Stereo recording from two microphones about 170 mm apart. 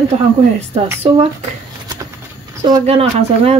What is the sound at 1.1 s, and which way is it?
Speech, 30° right (ahead or behind).